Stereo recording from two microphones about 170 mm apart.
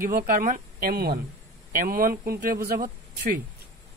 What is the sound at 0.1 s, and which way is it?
Speech, 60° right (ahead or behind).